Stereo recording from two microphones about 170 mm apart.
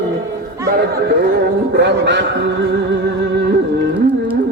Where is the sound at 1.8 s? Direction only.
90° right.